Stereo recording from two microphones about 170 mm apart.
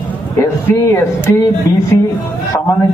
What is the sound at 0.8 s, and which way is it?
Speech, 15° left (ahead or behind).